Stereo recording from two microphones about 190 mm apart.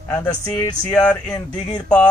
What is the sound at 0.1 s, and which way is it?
Speech, 10° left (ahead or behind).